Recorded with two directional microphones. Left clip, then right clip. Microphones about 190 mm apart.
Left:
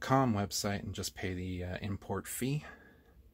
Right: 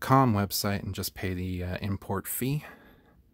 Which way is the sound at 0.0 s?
40° right (ahead or behind).